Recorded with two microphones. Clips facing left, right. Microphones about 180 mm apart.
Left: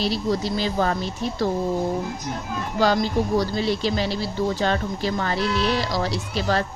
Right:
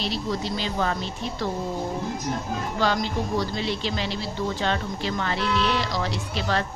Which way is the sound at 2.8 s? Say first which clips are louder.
Left 5 dB; 40° left (ahead or behind).